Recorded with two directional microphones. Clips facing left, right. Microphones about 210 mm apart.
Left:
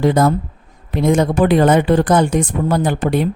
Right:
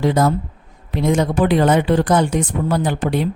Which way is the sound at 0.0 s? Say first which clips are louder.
Left 2 dB; 50° left (ahead or behind).